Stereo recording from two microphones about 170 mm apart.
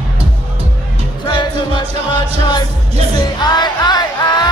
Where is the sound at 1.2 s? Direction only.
25° left (ahead or behind).